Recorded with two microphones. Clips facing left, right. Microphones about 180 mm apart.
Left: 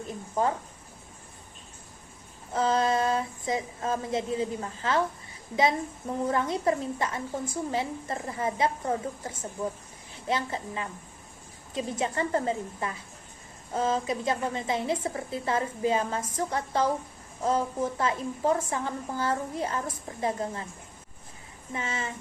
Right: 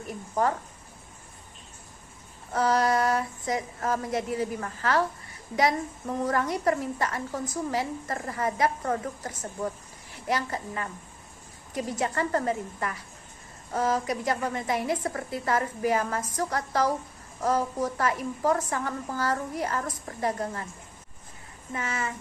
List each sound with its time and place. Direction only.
0.1 s a sound: 20° left (ahead or behind)
2.5 s a woman's voice: 25° left (ahead or behind)
6.2 s a woman's voice: 25° left (ahead or behind)
21.7 s a woman's voice: 25° left (ahead or behind)